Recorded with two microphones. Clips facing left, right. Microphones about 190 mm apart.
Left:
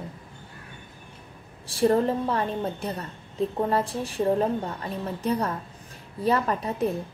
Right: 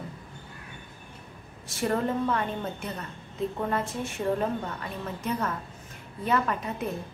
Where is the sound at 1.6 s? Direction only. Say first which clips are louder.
Left 6 dB; 30° left (ahead or behind).